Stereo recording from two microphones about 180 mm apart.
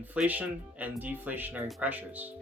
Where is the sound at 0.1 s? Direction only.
10° right (ahead or behind).